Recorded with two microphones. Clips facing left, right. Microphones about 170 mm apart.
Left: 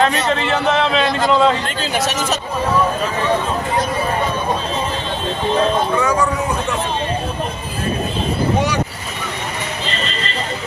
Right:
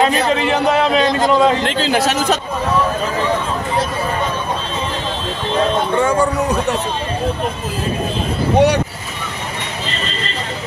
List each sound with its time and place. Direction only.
0.0 s speech: 10° right (ahead or behind)
1.6 s a man's voice: 90° right
5.9 s speech: 30° right (ahead or behind)
8.5 s speech: 65° right (ahead or behind)